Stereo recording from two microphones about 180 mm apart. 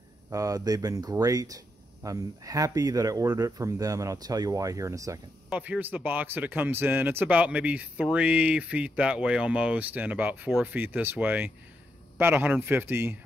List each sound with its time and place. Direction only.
0.3 s speech: 20° right (ahead or behind)